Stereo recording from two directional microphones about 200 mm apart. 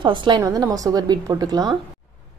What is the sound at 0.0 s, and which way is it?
A woman's voice, 25° right (ahead or behind).